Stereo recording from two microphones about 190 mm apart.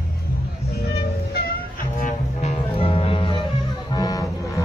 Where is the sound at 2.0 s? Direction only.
35° left (ahead or behind).